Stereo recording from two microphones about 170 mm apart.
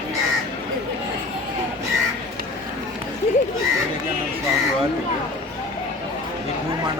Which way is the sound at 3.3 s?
40° left (ahead or behind).